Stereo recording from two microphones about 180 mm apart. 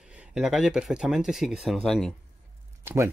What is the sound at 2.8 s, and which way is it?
Speech, 15° right (ahead or behind).